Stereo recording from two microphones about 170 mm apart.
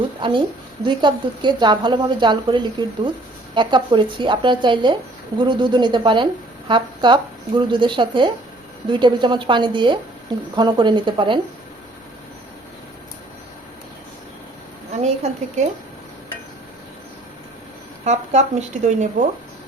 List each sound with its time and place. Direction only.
0.2 s a woman's voice: 30° right (ahead or behind)
15.0 s a woman's voice: 40° right (ahead or behind)
18.0 s speech: 40° right (ahead or behind)